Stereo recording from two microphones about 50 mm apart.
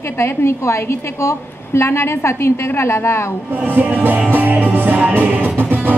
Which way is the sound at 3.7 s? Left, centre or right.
Right.